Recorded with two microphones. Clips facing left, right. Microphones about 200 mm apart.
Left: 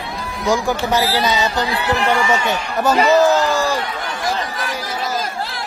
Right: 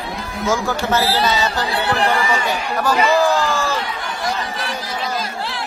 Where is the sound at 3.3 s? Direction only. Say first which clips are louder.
Left 3 dB; 40° left (ahead or behind).